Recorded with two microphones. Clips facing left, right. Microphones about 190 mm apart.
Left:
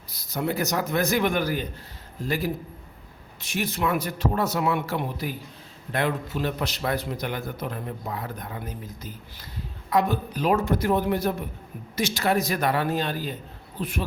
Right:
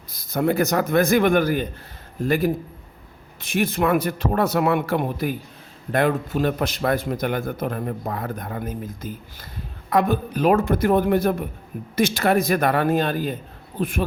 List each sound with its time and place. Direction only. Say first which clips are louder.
0.1 s a man's voice: right 6 dB; 50° right (ahead or behind)